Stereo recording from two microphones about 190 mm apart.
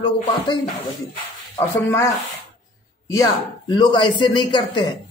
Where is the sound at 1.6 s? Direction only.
15° left (ahead or behind).